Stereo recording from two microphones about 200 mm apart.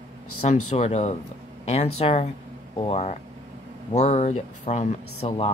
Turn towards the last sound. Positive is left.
turn(degrees=30)  # may be behind; listen again after turning